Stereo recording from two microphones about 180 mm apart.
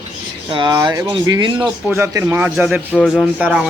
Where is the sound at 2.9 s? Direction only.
5° left (ahead or behind).